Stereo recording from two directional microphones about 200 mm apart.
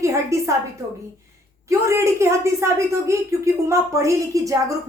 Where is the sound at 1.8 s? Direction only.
15° right (ahead or behind).